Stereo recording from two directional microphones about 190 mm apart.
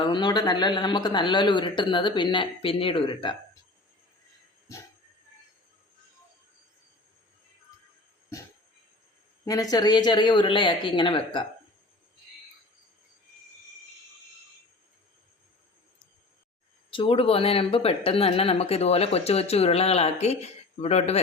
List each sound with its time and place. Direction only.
0.0 s speech: 25° left (ahead or behind)
9.5 s speech: 20° left (ahead or behind)
16.9 s speech: 30° left (ahead or behind)